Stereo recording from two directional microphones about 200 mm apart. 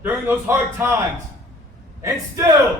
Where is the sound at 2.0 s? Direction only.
15° right (ahead or behind).